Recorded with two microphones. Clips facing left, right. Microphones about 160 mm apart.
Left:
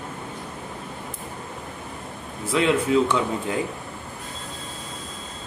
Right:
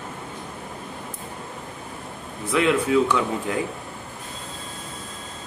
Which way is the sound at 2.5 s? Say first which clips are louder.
Even; 25° left (ahead or behind).